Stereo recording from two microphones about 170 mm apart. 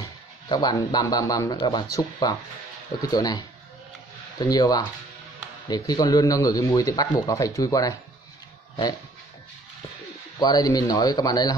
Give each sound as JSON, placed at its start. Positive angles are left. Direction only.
{"t": 0.5, "sound": "speech", "side_deg": 25}
{"t": 10.4, "sound": "speech", "side_deg": 25}